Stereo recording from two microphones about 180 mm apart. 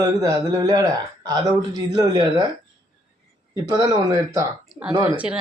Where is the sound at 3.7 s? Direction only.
20° right (ahead or behind).